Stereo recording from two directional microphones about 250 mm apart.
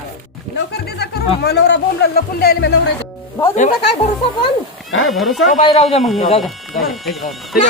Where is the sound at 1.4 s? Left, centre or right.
Left.